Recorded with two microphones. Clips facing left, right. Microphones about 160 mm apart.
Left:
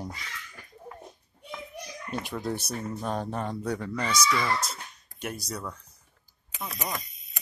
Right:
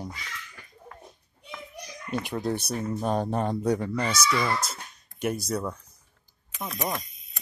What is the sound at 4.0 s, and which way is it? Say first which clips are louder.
Speech: right 1 dB; 5° right (ahead or behind).